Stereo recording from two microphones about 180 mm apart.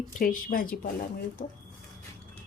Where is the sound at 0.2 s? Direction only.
50° left (ahead or behind).